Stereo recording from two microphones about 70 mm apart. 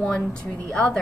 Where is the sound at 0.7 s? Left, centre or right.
Centre.